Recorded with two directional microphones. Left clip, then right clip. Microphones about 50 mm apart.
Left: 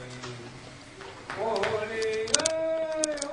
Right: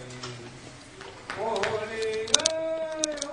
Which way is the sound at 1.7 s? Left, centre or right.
Centre.